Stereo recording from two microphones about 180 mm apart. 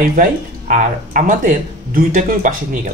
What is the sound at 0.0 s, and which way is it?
A woman's voice, 50° right (ahead or behind).